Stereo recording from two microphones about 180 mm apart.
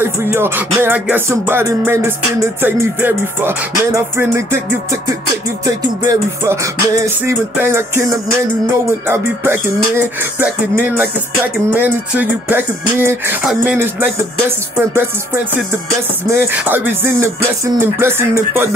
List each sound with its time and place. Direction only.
0.0 s music: 10° right (ahead or behind)
6.0 s music: 15° right (ahead or behind)